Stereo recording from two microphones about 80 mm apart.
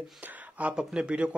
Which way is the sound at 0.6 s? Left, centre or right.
Centre.